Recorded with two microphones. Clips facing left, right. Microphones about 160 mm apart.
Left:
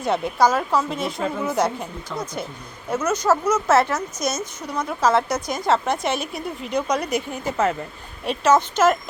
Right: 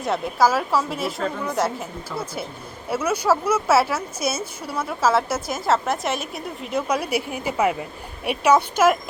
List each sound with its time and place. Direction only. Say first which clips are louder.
0.0 s a woman's voice: left 1 dB; centre (ahead or behind)